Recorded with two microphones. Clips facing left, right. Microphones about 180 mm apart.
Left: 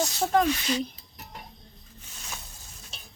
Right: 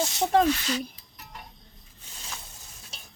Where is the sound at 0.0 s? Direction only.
25° right (ahead or behind).